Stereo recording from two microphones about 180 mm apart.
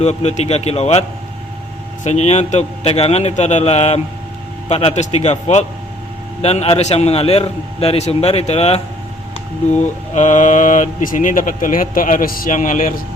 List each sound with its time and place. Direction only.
0.0 s a man's voice: 40° left (ahead or behind)
2.0 s a man's voice: 40° left (ahead or behind)